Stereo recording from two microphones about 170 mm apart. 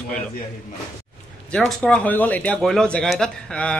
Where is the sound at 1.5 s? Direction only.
Centre (ahead or behind).